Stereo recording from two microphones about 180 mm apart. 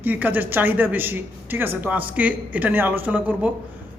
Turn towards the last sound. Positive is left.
turn(degrees=-10)  # may be behind; listen again after turning